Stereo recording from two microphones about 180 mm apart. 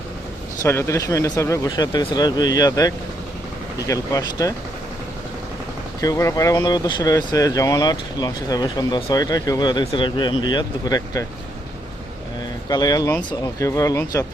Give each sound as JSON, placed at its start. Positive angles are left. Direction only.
{"t": 0.6, "sound": "speech", "side_deg": 15}
{"t": 6.0, "sound": "speech", "side_deg": 20}
{"t": 12.6, "sound": "speech", "side_deg": 20}